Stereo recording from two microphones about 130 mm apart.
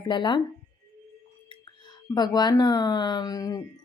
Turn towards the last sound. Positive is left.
turn(degrees=30)  # may be behind; listen again after turning